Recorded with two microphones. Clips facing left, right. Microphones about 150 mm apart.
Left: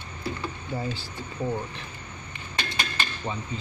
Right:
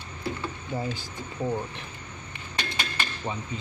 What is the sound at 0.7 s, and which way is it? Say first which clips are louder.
Speech: right 1 dB; 15° right (ahead or behind).